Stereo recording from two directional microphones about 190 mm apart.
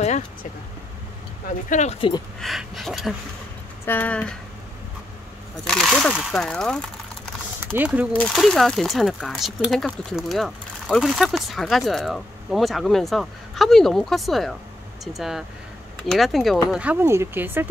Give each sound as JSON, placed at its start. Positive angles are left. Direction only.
{"t": 1.7, "sound": "speech", "side_deg": 35}
{"t": 2.4, "sound": "speech", "side_deg": 0}
{"t": 5.7, "sound": "speech", "side_deg": 5}
{"t": 7.6, "sound": "speech", "side_deg": -10}
{"t": 8.2, "sound": "speech", "side_deg": 0}